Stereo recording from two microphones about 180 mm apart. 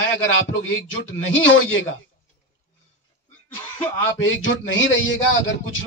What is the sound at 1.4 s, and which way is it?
Speech, 90° left.